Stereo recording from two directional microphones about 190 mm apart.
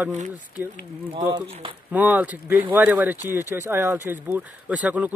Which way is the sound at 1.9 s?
10° right (ahead or behind).